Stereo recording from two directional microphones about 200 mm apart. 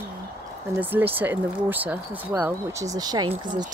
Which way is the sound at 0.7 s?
10° right (ahead or behind).